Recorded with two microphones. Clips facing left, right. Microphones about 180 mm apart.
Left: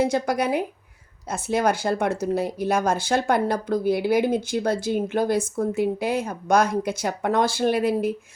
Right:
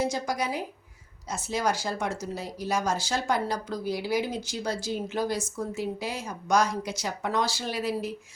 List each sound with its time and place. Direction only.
0.0 s speech: 60° left (ahead or behind)